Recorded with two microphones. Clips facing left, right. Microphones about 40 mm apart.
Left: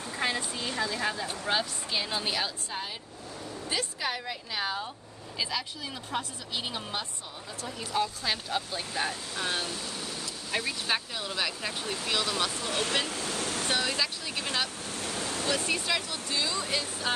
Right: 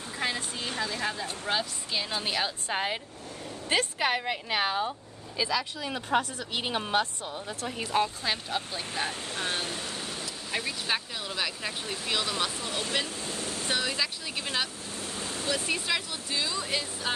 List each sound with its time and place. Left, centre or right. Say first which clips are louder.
0.2 s a sound: left 1 dB; centre
0.6 s a sound: left 1 dB; right
1.5 s speech: left 1 dB; centre
2.7 s speech: right 7 dB; right
7.6 s speech: right 2 dB; right
8.2 s speech: even; centre
9.0 s speech: left 1 dB; centre
9.5 s a sound: even; right
10.5 s speech: left 1 dB; centre
12.6 s speech: left 2 dB; left
13.1 s vehicle: left 2 dB; left
13.7 s speech: right 1 dB; centre
15.0 s waves: left 2 dB; left
15.5 s speech: right 1 dB; centre